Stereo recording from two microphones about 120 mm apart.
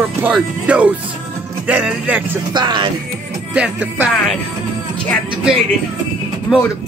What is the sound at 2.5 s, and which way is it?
Speech, 40° right (ahead or behind).